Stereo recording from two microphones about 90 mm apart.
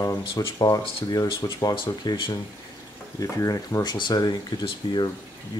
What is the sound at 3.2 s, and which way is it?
Speech, 40° left (ahead or behind).